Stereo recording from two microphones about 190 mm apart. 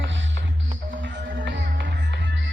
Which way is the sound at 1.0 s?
70° right (ahead or behind).